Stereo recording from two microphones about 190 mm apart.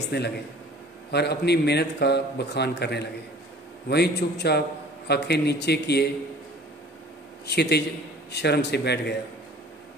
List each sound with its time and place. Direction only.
0.1 s a man's voice: 65° left (ahead or behind)
7.4 s a man's voice: 60° left (ahead or behind)